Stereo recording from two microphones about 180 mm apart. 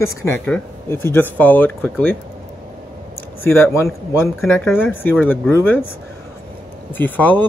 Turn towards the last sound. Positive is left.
turn(degrees=10)  # may be behind; listen again after turning